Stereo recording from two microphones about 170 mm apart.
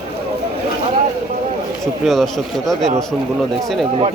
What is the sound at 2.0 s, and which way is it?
Speech, centre (ahead or behind).